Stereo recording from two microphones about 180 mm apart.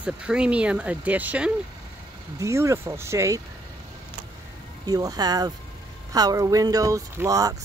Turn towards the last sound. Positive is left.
turn(degrees=-20)  # may be behind; listen again after turning